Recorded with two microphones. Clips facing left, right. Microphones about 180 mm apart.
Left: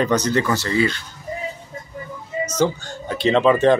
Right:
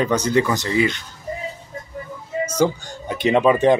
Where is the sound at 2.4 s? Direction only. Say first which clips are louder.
Right 1 dB; 10° right (ahead or behind).